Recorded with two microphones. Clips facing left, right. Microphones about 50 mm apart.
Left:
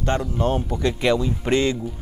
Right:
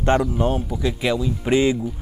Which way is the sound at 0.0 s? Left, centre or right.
Right.